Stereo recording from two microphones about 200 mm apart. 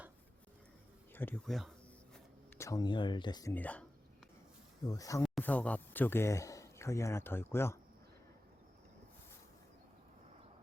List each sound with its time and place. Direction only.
1.1 s speech: 10° left (ahead or behind)
2.6 s speech: 15° left (ahead or behind)
3.5 s speech: 10° left (ahead or behind)
4.9 s speech: 15° left (ahead or behind)
5.2 s speech: 5° left (ahead or behind)